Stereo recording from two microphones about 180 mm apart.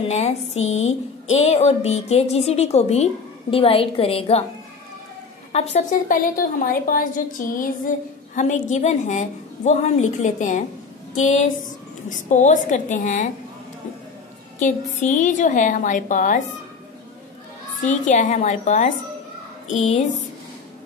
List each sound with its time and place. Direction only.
0.1 s speech: 35° left (ahead or behind)
5.5 s a woman's voice: 35° left (ahead or behind)
14.6 s a woman's voice: 45° left (ahead or behind)
17.8 s a woman's voice: 45° left (ahead or behind)